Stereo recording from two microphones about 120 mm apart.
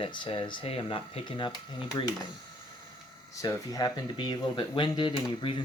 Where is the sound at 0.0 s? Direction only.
45° left (ahead or behind).